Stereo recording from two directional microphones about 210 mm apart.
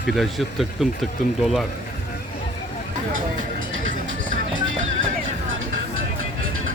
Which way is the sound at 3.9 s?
40° right (ahead or behind).